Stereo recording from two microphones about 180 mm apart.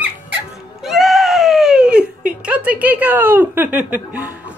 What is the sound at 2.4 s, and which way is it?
Speech, 5° right (ahead or behind).